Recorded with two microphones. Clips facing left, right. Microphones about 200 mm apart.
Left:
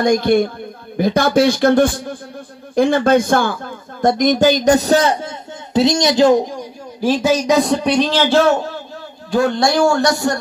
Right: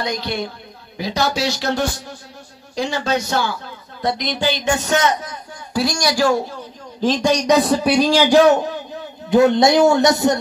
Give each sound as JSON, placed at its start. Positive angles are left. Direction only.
{"t": 0.0, "sound": "a man's voice", "side_deg": 50}